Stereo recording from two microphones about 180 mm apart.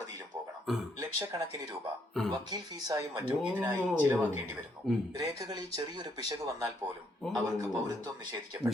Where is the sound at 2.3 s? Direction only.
20° right (ahead or behind).